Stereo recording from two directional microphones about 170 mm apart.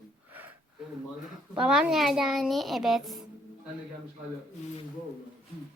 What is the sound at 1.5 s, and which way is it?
A child's voice, 5° right (ahead or behind).